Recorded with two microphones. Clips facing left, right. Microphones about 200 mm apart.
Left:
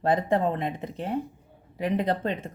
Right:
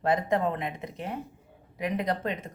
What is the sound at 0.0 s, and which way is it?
Speech, 30° left (ahead or behind).